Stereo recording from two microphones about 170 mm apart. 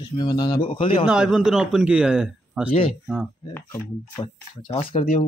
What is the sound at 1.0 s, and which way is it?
A man's voice, 5° right (ahead or behind).